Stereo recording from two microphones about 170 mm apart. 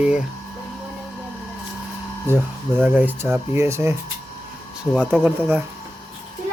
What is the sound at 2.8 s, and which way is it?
Speech, 10° right (ahead or behind).